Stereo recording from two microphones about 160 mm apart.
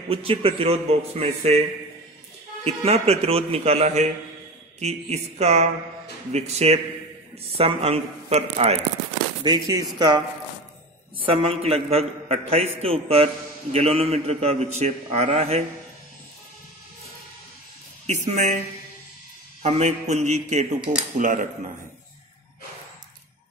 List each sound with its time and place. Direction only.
0.1 s a man's voice: 35° right (ahead or behind)
2.6 s a man's voice: 40° right (ahead or behind)
9.4 s speech: 25° right (ahead or behind)
11.2 s a man's voice: 35° right (ahead or behind)
18.0 s a man's voice: 45° right (ahead or behind)
19.6 s a man's voice: 45° right (ahead or behind)